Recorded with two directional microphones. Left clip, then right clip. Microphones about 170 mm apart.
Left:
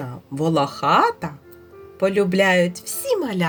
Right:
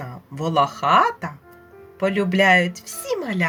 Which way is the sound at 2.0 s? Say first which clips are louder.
Left 1 dB; 45° left (ahead or behind).